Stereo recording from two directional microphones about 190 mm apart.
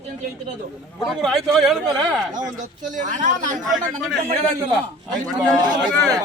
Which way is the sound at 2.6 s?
40° right (ahead or behind).